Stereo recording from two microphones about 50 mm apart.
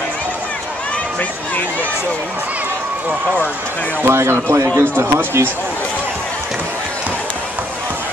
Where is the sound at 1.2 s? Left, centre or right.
Left.